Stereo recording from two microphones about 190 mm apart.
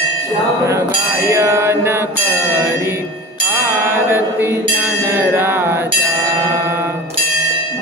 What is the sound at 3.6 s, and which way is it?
Music, 10° right (ahead or behind).